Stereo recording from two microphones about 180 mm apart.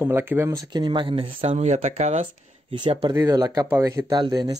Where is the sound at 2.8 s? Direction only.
25° right (ahead or behind).